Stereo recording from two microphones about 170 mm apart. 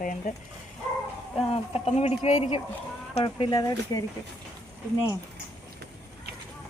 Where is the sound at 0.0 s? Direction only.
50° left (ahead or behind).